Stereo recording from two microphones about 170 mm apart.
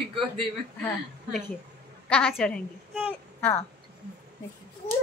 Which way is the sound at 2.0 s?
5° left (ahead or behind).